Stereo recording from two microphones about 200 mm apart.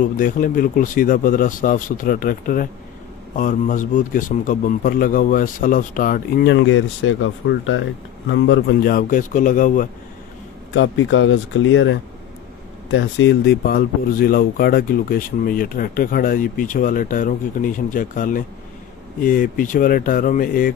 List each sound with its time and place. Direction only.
0.2 s speech: 45° left (ahead or behind)
6.4 s speech: 70° left (ahead or behind); by 9.8 s 40° left (ahead or behind)
10.7 s speech: 70° left (ahead or behind)
13.7 s speech: 50° left (ahead or behind)